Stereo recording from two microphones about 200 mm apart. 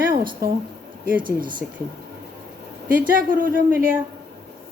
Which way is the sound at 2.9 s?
45° right (ahead or behind).